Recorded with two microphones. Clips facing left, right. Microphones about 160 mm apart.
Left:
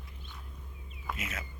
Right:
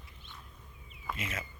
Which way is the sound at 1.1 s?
Centre (ahead or behind).